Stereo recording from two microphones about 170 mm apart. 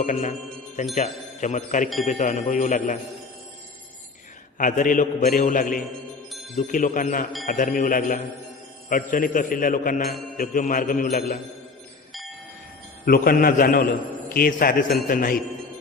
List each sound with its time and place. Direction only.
0.0 s a man's voice: 45° left (ahead or behind)
4.5 s a man's voice: 50° left (ahead or behind)
13.1 s a man's voice: 60° left (ahead or behind)